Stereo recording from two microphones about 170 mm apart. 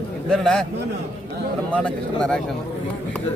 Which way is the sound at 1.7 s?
5° left (ahead or behind).